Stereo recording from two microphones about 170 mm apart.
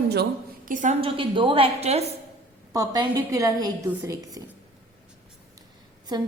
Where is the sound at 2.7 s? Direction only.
20° right (ahead or behind).